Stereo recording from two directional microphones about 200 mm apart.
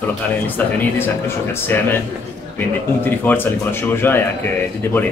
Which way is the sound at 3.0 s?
10° left (ahead or behind).